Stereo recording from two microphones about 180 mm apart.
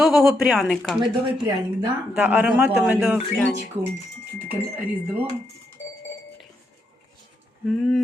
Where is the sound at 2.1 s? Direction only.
10° right (ahead or behind).